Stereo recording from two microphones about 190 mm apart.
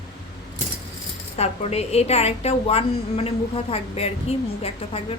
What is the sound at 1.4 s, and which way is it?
A woman's voice, 35° left (ahead or behind).